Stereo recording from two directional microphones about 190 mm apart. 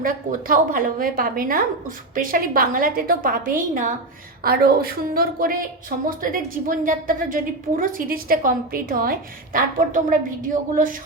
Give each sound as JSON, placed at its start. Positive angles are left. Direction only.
{"t": 0.0, "sound": "a woman's voice", "side_deg": -45}